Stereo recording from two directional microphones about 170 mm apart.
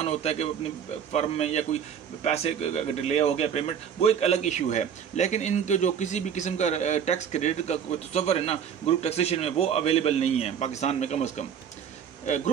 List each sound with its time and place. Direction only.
0.0 s a man's voice: 40° left (ahead or behind)